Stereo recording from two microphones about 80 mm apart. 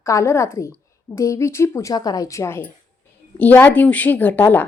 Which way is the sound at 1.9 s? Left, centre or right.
Left.